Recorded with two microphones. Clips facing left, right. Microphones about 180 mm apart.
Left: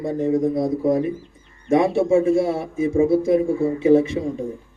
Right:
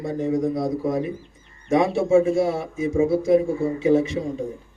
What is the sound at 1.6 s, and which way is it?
A man's voice, 55° left (ahead or behind).